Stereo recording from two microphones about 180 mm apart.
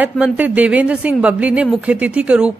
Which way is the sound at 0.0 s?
10° right (ahead or behind).